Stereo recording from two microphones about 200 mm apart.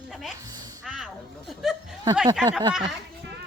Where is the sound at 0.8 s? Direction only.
Centre (ahead or behind).